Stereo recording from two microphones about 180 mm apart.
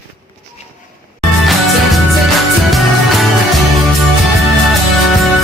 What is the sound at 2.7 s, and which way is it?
Music, centre (ahead or behind).